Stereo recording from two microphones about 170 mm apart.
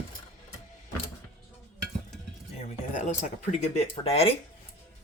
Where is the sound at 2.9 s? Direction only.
45° left (ahead or behind).